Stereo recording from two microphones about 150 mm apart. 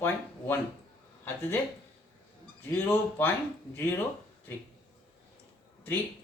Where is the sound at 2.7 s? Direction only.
15° left (ahead or behind).